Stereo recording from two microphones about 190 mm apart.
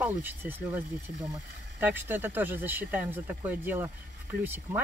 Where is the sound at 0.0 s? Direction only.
10° right (ahead or behind).